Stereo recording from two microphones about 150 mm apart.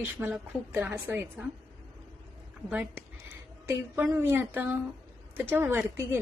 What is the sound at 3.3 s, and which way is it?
A woman's voice, 15° right (ahead or behind).